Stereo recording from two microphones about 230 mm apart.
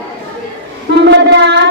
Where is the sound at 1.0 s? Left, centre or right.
Right.